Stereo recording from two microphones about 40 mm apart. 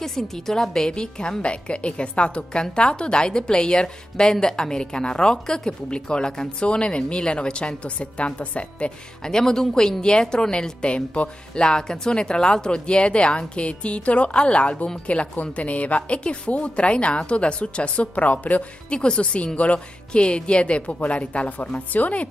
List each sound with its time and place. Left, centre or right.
0.0 s a woman's voice: centre; by 8.9 s left
9.2 s speech: centre
10.8 s a woman's voice: left
18.9 s a woman's voice: left